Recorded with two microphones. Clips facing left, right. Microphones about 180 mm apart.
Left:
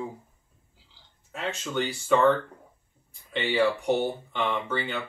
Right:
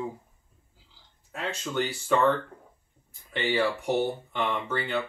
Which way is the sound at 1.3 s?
Centre (ahead or behind).